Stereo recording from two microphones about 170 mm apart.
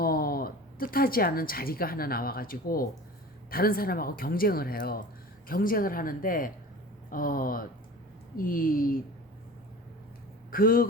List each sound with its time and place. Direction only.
0.0 s speech: 60° left (ahead or behind)
10.5 s speech: 60° left (ahead or behind)